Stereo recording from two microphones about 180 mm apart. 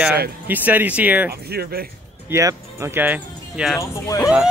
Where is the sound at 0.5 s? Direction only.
10° right (ahead or behind).